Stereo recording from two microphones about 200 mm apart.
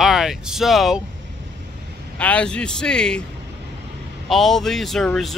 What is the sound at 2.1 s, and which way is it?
Speech, 5° left (ahead or behind).